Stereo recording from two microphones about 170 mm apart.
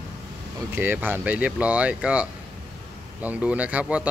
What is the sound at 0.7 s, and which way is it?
A man's voice, 10° right (ahead or behind).